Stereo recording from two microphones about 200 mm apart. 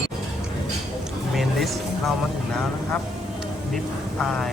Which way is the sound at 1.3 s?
Centre (ahead or behind).